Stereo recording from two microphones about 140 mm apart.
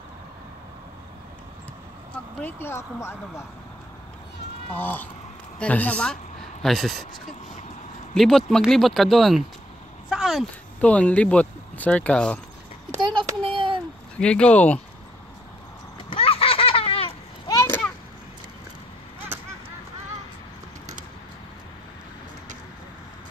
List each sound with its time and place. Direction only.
2.1 s speech: 15° left (ahead or behind)
4.7 s speech: 15° left (ahead or behind)
8.1 s speech: centre (ahead or behind)
10.0 s a sound: centre (ahead or behind)
10.8 s speech: 10° left (ahead or behind)
13.2 s child singing: 40° right (ahead or behind)
14.2 s speech: 5° left (ahead or behind)
16.1 s baby laughter: 40° left (ahead or behind)
17.5 s a sound: 20° left (ahead or behind)
19.1 s a sound: 15° right (ahead or behind)